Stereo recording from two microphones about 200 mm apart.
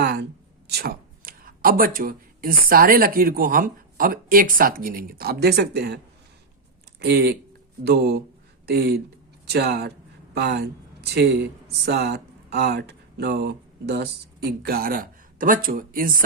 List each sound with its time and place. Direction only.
0.0 s a sound: 55° right (ahead or behind)
0.7 s speech: 50° right (ahead or behind)
7.0 s speech: 50° right (ahead or behind)